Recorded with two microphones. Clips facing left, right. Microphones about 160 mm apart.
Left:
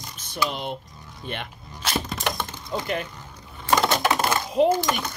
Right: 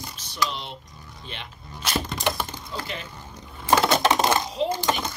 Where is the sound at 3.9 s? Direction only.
25° right (ahead or behind).